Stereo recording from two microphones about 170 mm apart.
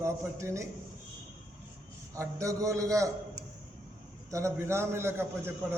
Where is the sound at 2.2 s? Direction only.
20° right (ahead or behind).